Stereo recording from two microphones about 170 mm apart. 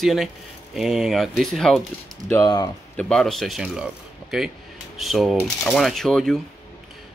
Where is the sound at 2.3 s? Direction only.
20° left (ahead or behind).